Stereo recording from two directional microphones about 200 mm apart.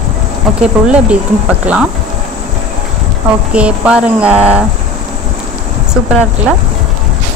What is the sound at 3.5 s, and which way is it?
Music, 5° right (ahead or behind).